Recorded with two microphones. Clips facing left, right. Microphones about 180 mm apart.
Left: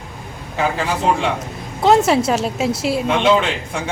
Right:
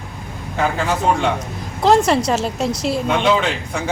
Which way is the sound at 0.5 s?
Centre (ahead or behind).